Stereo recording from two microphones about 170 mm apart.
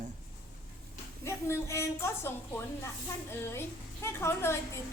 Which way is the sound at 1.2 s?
15° left (ahead or behind).